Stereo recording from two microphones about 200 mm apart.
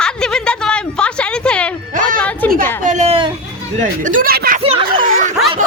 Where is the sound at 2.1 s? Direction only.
5° left (ahead or behind).